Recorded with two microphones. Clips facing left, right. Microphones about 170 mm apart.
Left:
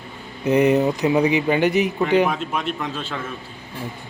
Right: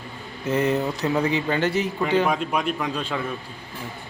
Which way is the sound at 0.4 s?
15° left (ahead or behind).